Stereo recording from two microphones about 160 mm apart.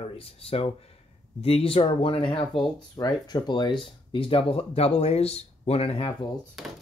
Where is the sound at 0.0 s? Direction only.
35° left (ahead or behind).